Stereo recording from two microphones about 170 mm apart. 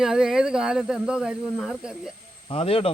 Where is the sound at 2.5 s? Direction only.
35° left (ahead or behind).